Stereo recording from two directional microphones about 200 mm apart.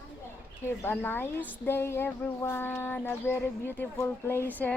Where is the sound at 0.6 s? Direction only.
10° left (ahead or behind).